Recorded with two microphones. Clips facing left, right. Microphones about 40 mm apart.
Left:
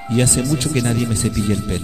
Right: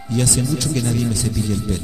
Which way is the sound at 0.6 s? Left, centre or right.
Left.